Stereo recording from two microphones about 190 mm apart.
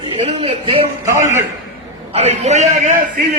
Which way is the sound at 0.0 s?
35° right (ahead or behind).